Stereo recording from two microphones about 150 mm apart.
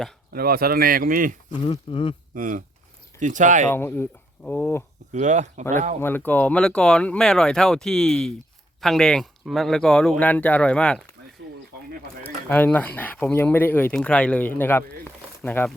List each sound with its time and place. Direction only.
0.3 s speech: 90° right; by 1.4 s 70° right (ahead or behind)
1.6 s speech: 35° left (ahead or behind)
2.3 s speech: 60° right (ahead or behind)
3.7 s speech: 15° left (ahead or behind)
5.1 s speech: 55° right (ahead or behind)
6.0 s speech: 15° left (ahead or behind)
12.2 s speech: 10° left (ahead or behind)